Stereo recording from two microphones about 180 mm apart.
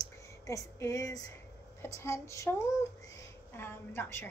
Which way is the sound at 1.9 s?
15° left (ahead or behind).